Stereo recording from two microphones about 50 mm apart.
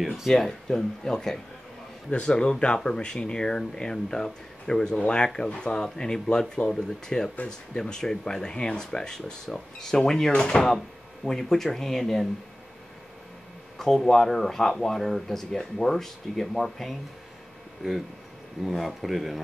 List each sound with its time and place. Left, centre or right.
0.3 s a man's voice: centre
13.7 s speech: centre
18.6 s speech: centre